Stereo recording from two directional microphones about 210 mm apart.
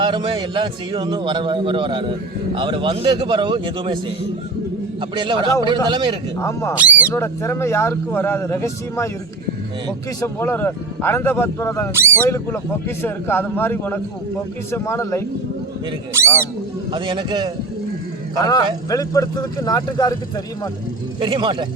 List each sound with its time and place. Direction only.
0.0 s a man's voice: 25° right (ahead or behind)
4.9 s a man's voice: 20° right (ahead or behind)
6.4 s a man's voice: 15° left (ahead or behind)
6.7 s speech: 5° right (ahead or behind)
7.1 s a man's voice: 10° left (ahead or behind)
10.2 s a man's voice: 10° left (ahead or behind)
11.9 s speech: 10° right (ahead or behind)
13.0 s a man's voice: 10° left (ahead or behind)
16.1 s speech: 10° right (ahead or behind)
16.9 s a man's voice: 25° right (ahead or behind)
18.4 s a man's voice: 20° left (ahead or behind)
21.2 s a man's voice: 20° right (ahead or behind)